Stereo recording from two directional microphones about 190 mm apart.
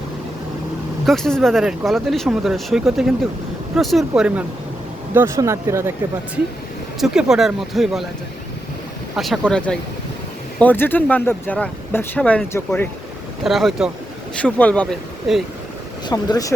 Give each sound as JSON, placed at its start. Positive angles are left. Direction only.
{"t": 1.0, "sound": "speech", "side_deg": 0}
{"t": 7.0, "sound": "speech", "side_deg": -5}
{"t": 9.1, "sound": "speech", "side_deg": 0}
{"t": 16.0, "sound": "speech", "side_deg": 20}